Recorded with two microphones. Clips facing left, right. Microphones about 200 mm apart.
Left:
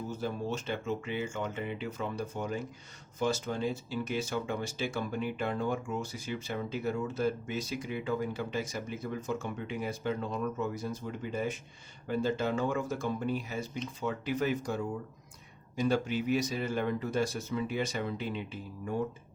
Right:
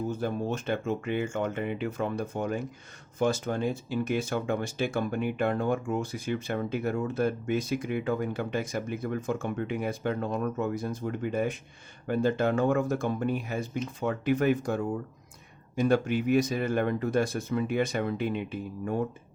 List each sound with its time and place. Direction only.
0.2 s speech: 55° right (ahead or behind)